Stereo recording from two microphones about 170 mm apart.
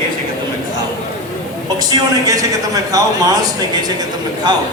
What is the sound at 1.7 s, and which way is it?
A man's voice, 25° right (ahead or behind).